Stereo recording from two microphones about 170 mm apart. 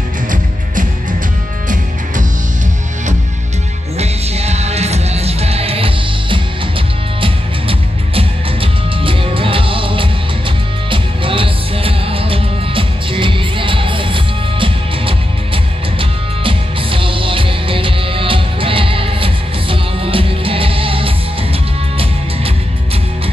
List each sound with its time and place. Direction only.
4.0 s music: 40° right (ahead or behind)